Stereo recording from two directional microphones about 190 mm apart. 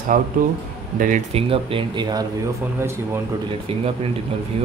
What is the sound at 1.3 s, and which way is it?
Speech, 30° right (ahead or behind).